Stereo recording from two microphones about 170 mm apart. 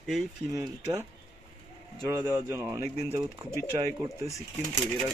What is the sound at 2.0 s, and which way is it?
Speech, 20° right (ahead or behind).